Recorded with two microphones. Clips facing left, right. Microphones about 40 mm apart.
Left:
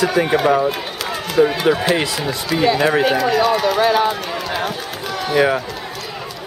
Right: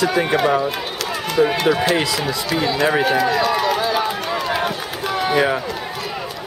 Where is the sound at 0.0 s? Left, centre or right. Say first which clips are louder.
Left 1 dB; centre.